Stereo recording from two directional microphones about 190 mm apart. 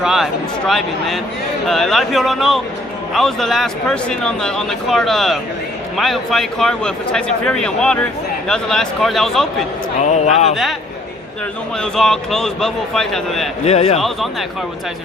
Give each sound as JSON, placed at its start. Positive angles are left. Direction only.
{"t": 0.0, "sound": "speech", "side_deg": -5}
{"t": 10.0, "sound": "speech", "side_deg": 35}
{"t": 10.5, "sound": "speech", "side_deg": 0}
{"t": 11.8, "sound": "speech", "side_deg": 5}
{"t": 13.7, "sound": "speech", "side_deg": 35}